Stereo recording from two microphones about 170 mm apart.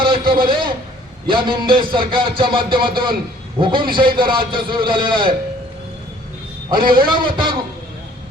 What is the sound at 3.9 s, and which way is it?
Speech, 30° right (ahead or behind).